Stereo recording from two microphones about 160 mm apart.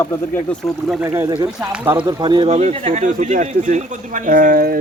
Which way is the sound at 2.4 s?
45° right (ahead or behind).